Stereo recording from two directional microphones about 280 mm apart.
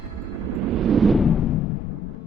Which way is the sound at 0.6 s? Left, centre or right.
Centre.